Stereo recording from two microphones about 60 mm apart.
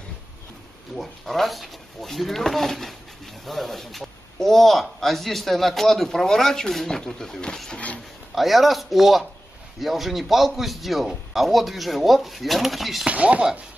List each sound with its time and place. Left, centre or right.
0.9 s speech: centre
8.4 s speech: centre
13.0 s speech: right